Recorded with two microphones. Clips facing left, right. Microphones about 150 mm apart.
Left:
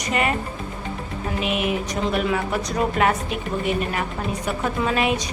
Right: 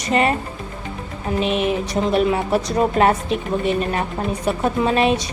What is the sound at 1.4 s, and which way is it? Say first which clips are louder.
A woman's voice: right 4 dB; 30° right (ahead or behind).